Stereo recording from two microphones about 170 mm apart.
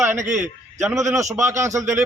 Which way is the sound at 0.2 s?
45° right (ahead or behind).